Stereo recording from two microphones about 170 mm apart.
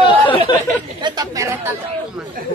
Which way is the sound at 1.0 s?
25° right (ahead or behind).